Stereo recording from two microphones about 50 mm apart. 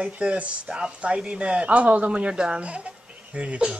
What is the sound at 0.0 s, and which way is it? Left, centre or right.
Speech, right.